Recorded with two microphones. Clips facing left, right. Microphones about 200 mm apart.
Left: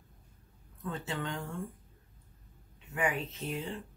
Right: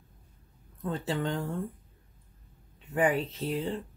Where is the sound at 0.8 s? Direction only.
35° right (ahead or behind).